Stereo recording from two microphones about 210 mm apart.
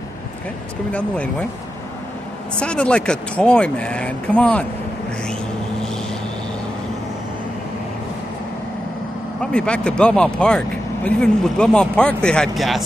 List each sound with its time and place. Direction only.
0.9 s speech: 5° left (ahead or behind)
2.6 s speech: 5° left (ahead or behind)
9.4 s speech: 5° left (ahead or behind)